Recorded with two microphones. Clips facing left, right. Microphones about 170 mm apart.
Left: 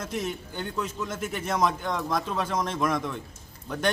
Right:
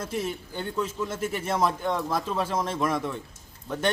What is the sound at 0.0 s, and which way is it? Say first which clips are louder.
Speech: right 1 dB; 30° right (ahead or behind).